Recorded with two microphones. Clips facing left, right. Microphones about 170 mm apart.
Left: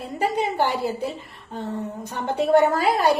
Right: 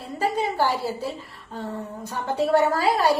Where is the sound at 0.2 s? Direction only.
20° left (ahead or behind).